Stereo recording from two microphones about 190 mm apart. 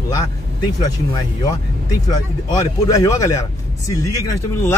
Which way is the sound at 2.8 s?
15° left (ahead or behind).